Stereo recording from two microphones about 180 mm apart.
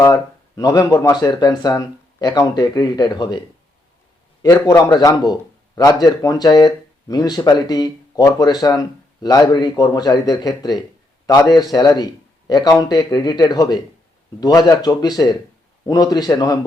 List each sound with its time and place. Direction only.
0.0 s speech: 20° left (ahead or behind)
4.4 s speech: 15° left (ahead or behind)